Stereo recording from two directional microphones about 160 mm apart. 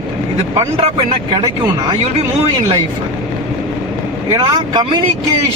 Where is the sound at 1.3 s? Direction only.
30° right (ahead or behind).